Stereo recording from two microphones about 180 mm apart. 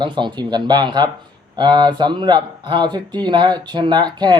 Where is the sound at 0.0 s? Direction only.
25° right (ahead or behind).